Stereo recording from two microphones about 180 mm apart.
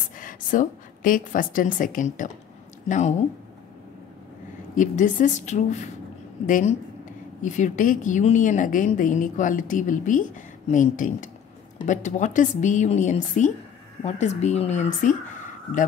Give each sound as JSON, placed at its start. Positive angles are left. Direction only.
{"t": 0.2, "sound": "a woman's voice", "side_deg": 50}
{"t": 4.7, "sound": "a woman's voice", "side_deg": 45}